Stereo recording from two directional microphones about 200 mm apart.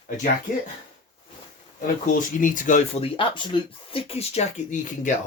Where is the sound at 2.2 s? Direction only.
40° left (ahead or behind).